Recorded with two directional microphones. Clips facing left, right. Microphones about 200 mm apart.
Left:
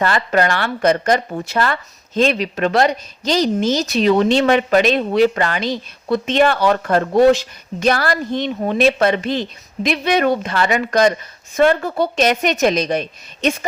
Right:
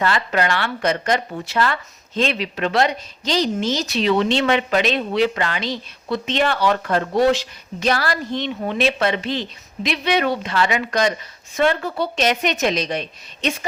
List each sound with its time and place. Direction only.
0.0 s speech: 45° left (ahead or behind)